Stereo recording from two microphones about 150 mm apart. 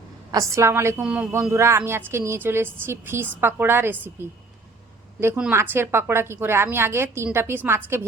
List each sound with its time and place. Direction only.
0.3 s a woman's voice: 20° right (ahead or behind)